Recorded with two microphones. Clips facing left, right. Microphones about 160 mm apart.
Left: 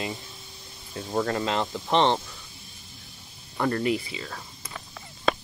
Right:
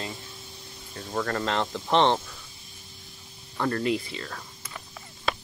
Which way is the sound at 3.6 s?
20° left (ahead or behind).